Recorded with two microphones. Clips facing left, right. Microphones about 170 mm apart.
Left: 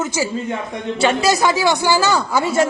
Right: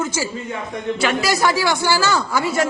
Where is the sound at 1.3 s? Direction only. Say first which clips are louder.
Left 2 dB; 20° left (ahead or behind).